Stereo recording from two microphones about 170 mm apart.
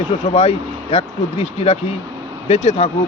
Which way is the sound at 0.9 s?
35° left (ahead or behind).